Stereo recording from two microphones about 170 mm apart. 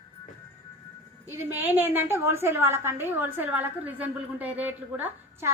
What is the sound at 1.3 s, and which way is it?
A woman's voice, 15° right (ahead or behind).